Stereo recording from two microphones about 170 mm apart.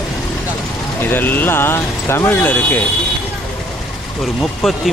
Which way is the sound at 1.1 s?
10° left (ahead or behind).